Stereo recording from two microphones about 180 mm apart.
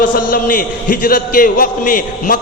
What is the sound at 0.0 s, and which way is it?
A man's voice, 50° left (ahead or behind).